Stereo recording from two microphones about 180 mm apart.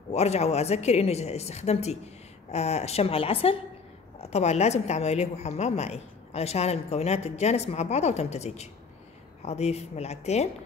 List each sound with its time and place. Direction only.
0.1 s speech: 35° left (ahead or behind)